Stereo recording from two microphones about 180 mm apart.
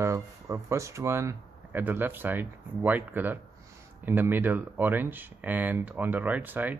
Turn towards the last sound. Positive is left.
turn(degrees=-10)  # may be behind; listen again after turning